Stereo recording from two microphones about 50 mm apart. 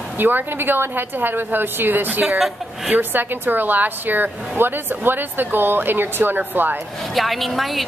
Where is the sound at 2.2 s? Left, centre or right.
Centre.